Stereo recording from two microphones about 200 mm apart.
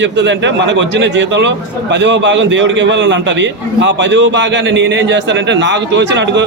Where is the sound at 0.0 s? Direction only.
60° right (ahead or behind).